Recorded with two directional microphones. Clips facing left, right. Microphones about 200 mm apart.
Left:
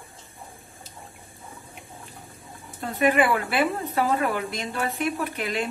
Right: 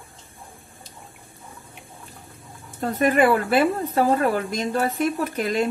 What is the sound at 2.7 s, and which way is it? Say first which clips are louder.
Speech: right 2 dB; 45° right (ahead or behind).